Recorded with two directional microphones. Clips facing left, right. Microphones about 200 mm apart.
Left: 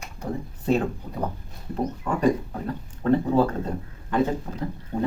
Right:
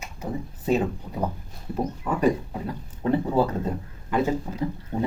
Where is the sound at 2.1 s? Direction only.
5° right (ahead or behind).